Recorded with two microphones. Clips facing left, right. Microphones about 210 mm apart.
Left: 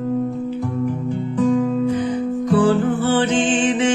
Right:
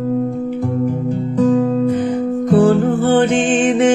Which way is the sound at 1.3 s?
45° right (ahead or behind).